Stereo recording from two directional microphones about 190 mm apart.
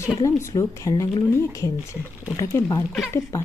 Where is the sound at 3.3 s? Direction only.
15° left (ahead or behind).